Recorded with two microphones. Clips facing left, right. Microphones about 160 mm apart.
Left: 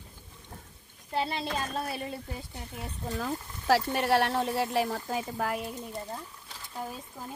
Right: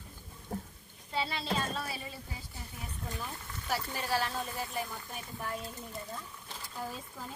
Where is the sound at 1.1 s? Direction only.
50° left (ahead or behind).